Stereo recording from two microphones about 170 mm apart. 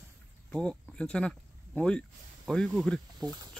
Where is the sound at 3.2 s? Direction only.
25° right (ahead or behind).